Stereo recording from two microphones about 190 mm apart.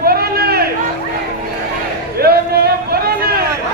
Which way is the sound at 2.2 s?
55° right (ahead or behind).